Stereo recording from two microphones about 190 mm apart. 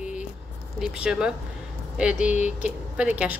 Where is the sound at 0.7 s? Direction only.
5° right (ahead or behind).